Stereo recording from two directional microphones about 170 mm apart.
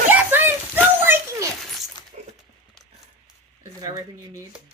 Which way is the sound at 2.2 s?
40° right (ahead or behind).